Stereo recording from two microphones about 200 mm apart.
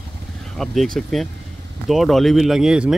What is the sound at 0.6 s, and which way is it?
Speech, centre (ahead or behind).